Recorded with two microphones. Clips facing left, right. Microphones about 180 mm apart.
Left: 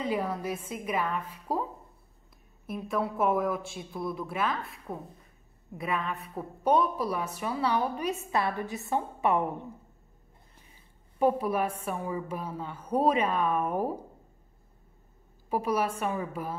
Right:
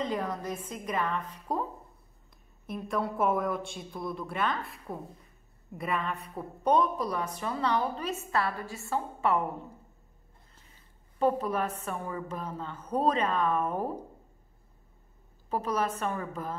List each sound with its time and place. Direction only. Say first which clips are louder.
0.0 s a woman's voice: left 2 dB; 10° left (ahead or behind)
11.1 s a woman's voice: left 2 dB; 10° left (ahead or behind)
15.5 s a woman's voice: left 2 dB; 10° left (ahead or behind)